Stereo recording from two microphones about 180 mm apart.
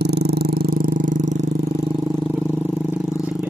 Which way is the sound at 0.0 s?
65° right (ahead or behind).